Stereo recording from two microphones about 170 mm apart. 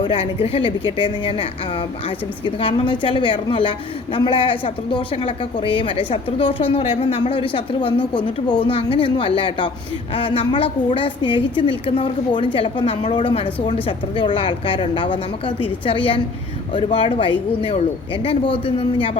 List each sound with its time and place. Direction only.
0.0 s a woman's voice: 30° left (ahead or behind)